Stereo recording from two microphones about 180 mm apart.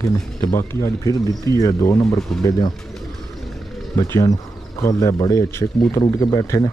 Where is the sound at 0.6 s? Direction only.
15° left (ahead or behind).